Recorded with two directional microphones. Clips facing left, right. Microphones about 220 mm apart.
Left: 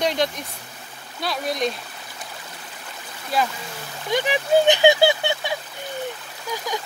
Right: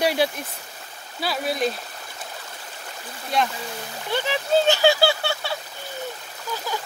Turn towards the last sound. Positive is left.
turn(degrees=15)  # may be behind; listen again after turning